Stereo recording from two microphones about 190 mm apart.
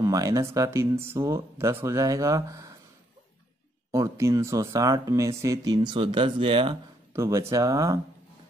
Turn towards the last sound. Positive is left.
turn(degrees=-15)  # may be behind; listen again after turning